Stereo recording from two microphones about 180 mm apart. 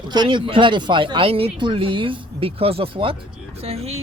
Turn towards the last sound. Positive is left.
turn(degrees=-35)  # may be behind; listen again after turning